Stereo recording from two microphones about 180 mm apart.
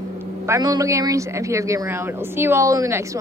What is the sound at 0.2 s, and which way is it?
Speech, 15° right (ahead or behind).